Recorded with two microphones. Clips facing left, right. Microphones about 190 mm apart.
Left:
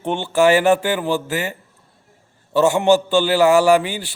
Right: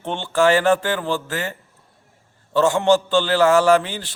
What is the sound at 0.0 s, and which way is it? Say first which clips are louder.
A man's voice: left 2 dB; 15° left (ahead or behind).